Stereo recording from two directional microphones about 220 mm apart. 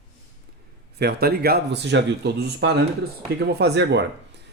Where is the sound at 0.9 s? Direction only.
45° right (ahead or behind).